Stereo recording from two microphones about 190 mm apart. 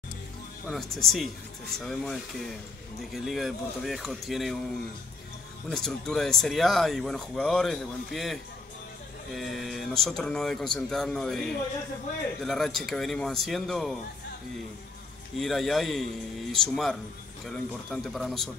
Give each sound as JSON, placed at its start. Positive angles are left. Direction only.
{"t": 0.7, "sound": "speech", "side_deg": 0}
{"t": 5.7, "sound": "speech", "side_deg": 0}
{"t": 15.3, "sound": "speech", "side_deg": 0}